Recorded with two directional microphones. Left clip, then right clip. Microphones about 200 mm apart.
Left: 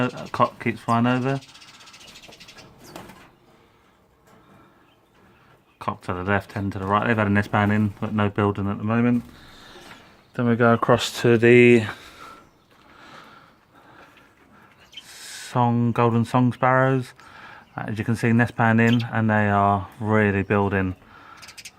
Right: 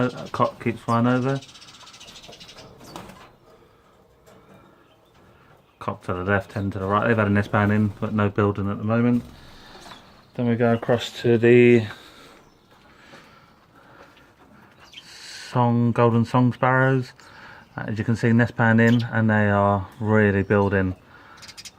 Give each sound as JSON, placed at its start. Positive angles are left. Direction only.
{"t": 0.0, "sound": "speech", "side_deg": 25}
{"t": 5.8, "sound": "speech", "side_deg": 20}
{"t": 10.3, "sound": "speech", "side_deg": 35}
{"t": 15.3, "sound": "speech", "side_deg": 15}